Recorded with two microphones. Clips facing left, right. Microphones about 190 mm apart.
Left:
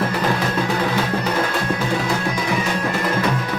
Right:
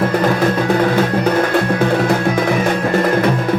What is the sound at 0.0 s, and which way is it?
Music, 50° right (ahead or behind).